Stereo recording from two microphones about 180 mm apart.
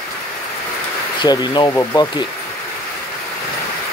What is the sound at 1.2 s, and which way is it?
Speech, 25° left (ahead or behind).